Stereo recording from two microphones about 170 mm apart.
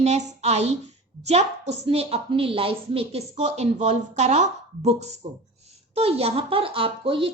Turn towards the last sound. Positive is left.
turn(degrees=-30)  # may be behind; listen again after turning